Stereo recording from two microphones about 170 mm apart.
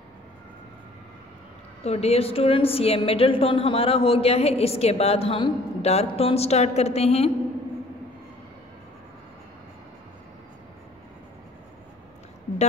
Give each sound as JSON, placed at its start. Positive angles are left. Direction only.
{"t": 1.8, "sound": "a woman's voice", "side_deg": 40}